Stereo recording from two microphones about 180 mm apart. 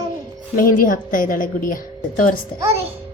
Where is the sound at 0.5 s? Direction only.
50° left (ahead or behind).